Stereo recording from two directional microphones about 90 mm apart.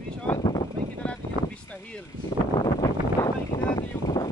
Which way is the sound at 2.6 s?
50° left (ahead or behind).